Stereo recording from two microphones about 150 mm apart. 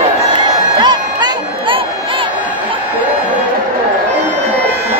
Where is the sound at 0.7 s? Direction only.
30° right (ahead or behind).